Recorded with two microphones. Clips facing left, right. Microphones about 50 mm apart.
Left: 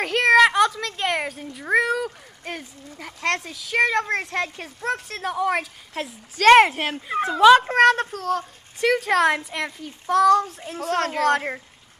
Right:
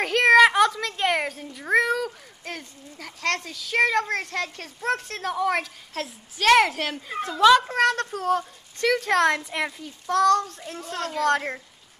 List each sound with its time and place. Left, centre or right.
0.0 s speech: centre
4.3 s a child's voice: left
4.8 s speech: centre
6.4 s a child's voice: left
7.5 s speech: left
8.1 s speech: centre
8.7 s a child's voice: centre
10.0 s a child's voice: centre
10.9 s a woman's voice: left
11.2 s speech: centre